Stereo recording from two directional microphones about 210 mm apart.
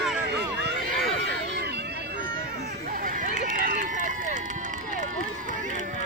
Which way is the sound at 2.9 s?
40° right (ahead or behind).